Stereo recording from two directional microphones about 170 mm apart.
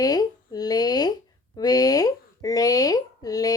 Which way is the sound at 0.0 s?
20° left (ahead or behind).